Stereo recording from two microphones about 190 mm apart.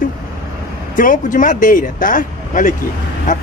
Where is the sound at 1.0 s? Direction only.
45° left (ahead or behind).